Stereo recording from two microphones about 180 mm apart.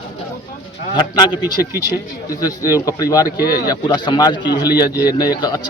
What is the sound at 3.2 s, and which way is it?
Speech, 55° left (ahead or behind).